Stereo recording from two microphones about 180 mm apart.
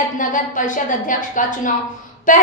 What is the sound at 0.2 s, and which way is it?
A woman's voice, 45° left (ahead or behind).